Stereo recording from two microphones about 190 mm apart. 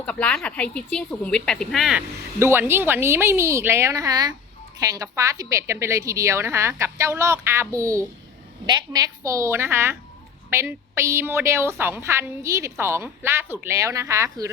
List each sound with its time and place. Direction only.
0.0 s a woman's voice: 5° left (ahead or behind)
2.4 s a woman's voice: 15° right (ahead or behind)